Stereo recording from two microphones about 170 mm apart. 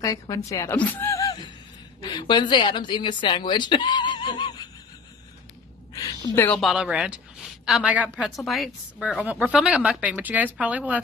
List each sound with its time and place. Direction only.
0.0 s a woman's voice: 20° left (ahead or behind)
5.9 s a sound: 15° left (ahead or behind)
6.5 s a woman's voice: centre (ahead or behind)